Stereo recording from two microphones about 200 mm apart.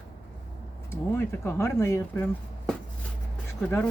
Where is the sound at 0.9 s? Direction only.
10° left (ahead or behind).